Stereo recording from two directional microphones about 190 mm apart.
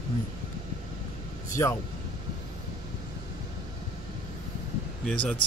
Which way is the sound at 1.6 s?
15° left (ahead or behind).